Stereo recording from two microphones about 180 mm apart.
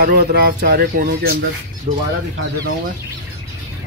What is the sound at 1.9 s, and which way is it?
Speech, 35° right (ahead or behind).